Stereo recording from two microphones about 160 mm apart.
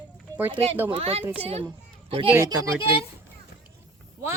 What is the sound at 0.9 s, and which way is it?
Speech, 40° right (ahead or behind).